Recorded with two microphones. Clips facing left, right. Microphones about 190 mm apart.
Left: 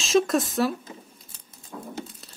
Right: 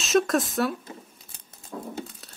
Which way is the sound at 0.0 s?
Centre (ahead or behind).